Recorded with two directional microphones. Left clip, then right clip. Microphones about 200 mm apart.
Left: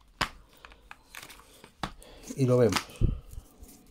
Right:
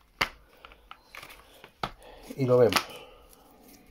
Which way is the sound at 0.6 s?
25° left (ahead or behind).